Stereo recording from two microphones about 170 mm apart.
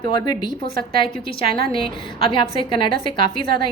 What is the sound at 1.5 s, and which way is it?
Speech, 65° right (ahead or behind).